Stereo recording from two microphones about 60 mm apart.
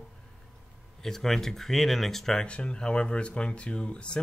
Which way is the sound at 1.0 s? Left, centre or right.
Centre.